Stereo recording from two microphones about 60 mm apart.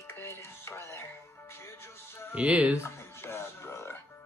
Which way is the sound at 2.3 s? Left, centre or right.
Right.